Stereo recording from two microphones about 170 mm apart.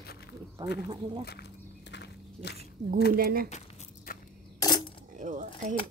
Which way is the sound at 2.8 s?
40° right (ahead or behind).